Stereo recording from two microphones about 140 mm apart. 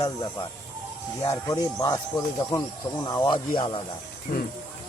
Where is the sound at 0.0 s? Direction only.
25° left (ahead or behind).